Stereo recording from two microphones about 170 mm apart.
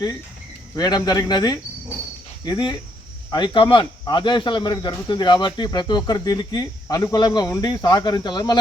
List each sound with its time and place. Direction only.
0.8 s speech: 25° left (ahead or behind)